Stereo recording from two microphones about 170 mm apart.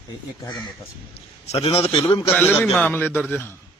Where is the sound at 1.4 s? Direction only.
35° left (ahead or behind).